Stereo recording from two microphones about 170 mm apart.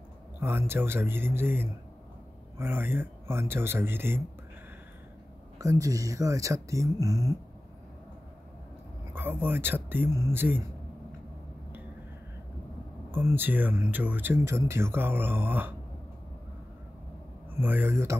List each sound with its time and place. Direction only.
0.4 s speech: 15° right (ahead or behind)
5.6 s speech: 20° right (ahead or behind)
9.1 s speech: 10° right (ahead or behind)
13.1 s speech: 10° right (ahead or behind)
17.6 s speech: 10° right (ahead or behind)